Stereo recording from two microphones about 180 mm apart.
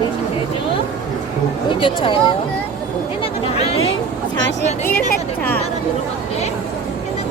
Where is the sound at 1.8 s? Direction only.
30° left (ahead or behind).